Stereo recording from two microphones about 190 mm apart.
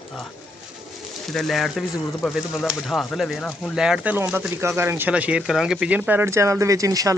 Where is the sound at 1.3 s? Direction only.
Centre (ahead or behind).